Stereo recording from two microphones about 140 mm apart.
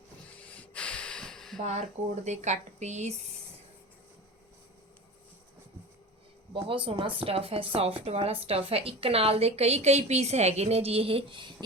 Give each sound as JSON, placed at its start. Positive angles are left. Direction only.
{"t": 0.4, "sound": "snort", "side_deg": 10}
{"t": 2.2, "sound": "speech", "side_deg": -55}
{"t": 6.5, "sound": "a woman's voice", "side_deg": -40}